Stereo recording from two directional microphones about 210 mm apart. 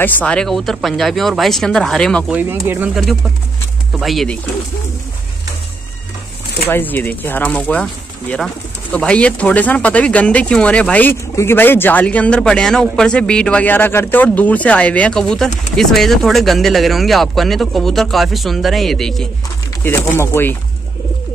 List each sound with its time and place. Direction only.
0.0 s speech: 5° left (ahead or behind)
2.3 s speech: 10° right (ahead or behind)
6.7 s speech: 10° left (ahead or behind)